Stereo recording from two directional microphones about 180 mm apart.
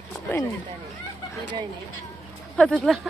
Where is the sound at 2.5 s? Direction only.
5° left (ahead or behind).